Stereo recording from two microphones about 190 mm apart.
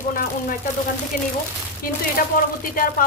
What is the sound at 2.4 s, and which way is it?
Speech, 45° left (ahead or behind).